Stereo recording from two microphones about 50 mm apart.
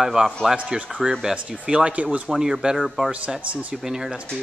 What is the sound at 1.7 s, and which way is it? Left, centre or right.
Speech, right.